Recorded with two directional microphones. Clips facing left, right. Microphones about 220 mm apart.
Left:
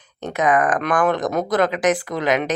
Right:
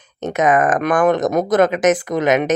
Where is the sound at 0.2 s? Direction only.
20° right (ahead or behind).